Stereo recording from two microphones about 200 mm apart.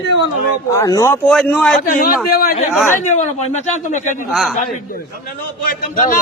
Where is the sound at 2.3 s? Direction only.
45° left (ahead or behind).